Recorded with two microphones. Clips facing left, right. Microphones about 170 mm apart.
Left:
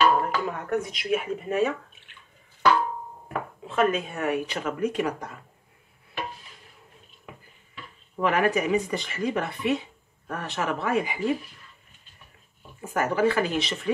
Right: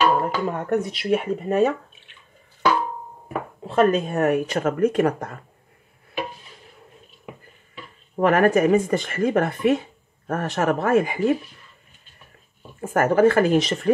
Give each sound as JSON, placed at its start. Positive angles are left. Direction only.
{"t": 0.2, "sound": "a sound", "side_deg": -35}
{"t": 0.8, "sound": "speech", "side_deg": -35}
{"t": 3.6, "sound": "speech", "side_deg": -40}
{"t": 8.2, "sound": "speech", "side_deg": -45}
{"t": 12.8, "sound": "speech", "side_deg": -50}